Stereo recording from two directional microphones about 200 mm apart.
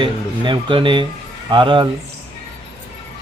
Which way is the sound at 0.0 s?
25° right (ahead or behind).